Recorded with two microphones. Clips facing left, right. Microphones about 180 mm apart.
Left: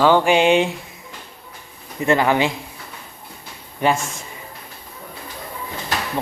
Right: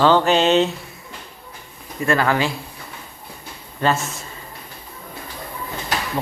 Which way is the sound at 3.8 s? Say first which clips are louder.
Left 1 dB; 15° left (ahead or behind).